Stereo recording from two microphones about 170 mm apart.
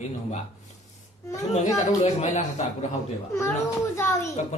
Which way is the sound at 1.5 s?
40° left (ahead or behind).